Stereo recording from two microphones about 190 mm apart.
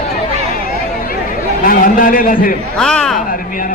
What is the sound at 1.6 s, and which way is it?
Speech, 45° left (ahead or behind).